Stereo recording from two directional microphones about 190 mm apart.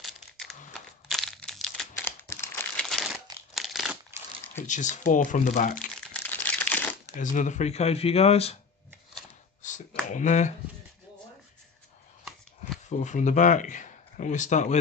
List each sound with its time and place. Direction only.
0.0 s a sound: centre (ahead or behind)
0.7 s crumpling: centre (ahead or behind)
2.8 s crumpling: centre (ahead or behind)
4.6 s speech: 40° left (ahead or behind)
5.9 s crumpling: 5° left (ahead or behind)
7.2 s speech: 40° left (ahead or behind)
9.6 s a sound: 40° left (ahead or behind)
10.0 s speech: 40° left (ahead or behind)
12.9 s speech: 40° left (ahead or behind)